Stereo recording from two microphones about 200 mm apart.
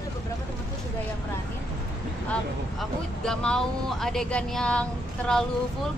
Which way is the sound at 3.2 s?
5° left (ahead or behind).